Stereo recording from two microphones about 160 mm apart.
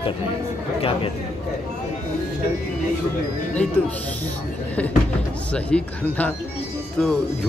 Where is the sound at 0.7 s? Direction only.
35° left (ahead or behind).